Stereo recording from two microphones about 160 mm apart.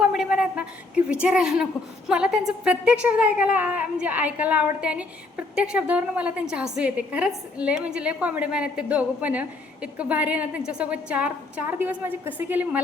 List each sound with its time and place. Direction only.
0.0 s a woman's voice: 5° right (ahead or behind)